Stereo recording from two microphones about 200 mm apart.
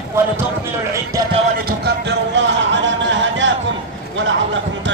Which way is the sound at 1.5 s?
55° right (ahead or behind).